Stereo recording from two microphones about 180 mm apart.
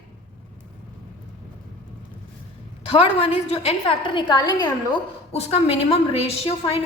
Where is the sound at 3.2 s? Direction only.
35° left (ahead or behind).